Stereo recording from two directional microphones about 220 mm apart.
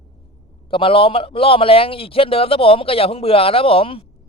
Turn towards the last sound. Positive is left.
turn(degrees=25)  # may be behind; listen again after turning